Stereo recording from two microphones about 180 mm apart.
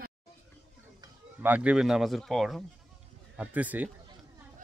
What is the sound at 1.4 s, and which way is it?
Speech, 10° right (ahead or behind).